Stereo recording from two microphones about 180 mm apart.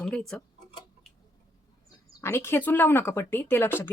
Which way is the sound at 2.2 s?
15° left (ahead or behind).